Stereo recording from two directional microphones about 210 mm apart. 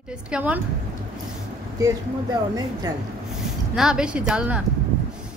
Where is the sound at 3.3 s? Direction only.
Centre (ahead or behind).